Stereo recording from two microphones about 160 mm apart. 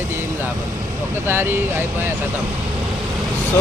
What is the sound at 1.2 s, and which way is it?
Speech, 15° right (ahead or behind).